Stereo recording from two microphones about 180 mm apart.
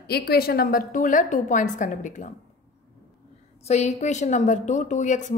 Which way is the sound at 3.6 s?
40° left (ahead or behind).